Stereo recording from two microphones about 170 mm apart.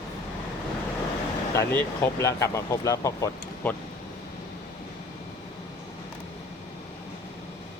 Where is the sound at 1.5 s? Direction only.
15° left (ahead or behind).